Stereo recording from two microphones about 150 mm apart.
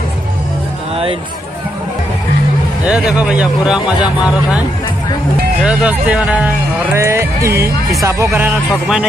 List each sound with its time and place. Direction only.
2.8 s speech: 5° right (ahead or behind)
8.6 s music: 5° right (ahead or behind)